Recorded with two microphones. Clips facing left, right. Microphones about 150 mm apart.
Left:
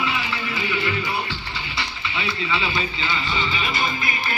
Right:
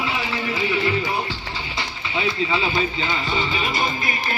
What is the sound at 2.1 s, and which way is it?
Speech, 40° right (ahead or behind).